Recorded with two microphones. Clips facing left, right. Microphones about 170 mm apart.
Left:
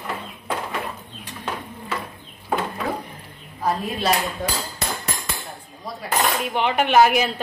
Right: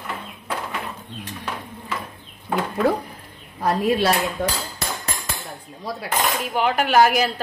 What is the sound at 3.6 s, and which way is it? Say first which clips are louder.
Speech: right 5 dB; 75° right (ahead or behind).